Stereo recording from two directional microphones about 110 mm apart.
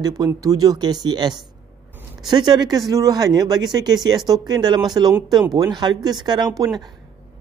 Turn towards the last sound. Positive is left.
turn(degrees=-35)  # may be behind; listen again after turning